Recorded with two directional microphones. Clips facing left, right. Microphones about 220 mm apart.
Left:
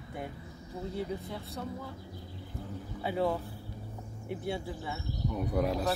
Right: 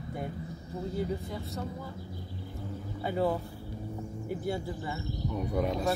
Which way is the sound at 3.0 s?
Centre (ahead or behind).